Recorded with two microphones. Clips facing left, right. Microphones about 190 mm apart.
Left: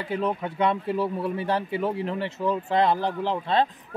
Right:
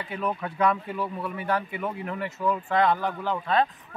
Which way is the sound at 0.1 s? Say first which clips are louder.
Left 4 dB; 25° left (ahead or behind).